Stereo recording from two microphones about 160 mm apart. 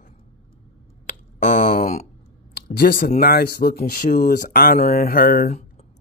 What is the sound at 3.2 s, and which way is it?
Speech, 80° left.